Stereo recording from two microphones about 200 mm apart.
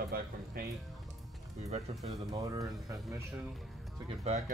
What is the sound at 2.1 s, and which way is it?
Speech, 15° right (ahead or behind).